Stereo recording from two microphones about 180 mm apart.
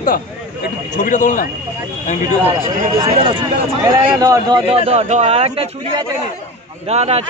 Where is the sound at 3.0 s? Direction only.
30° right (ahead or behind).